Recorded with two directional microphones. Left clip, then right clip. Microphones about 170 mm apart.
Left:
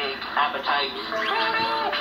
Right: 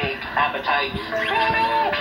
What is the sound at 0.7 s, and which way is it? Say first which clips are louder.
Speech: right 2 dB; 40° right (ahead or behind).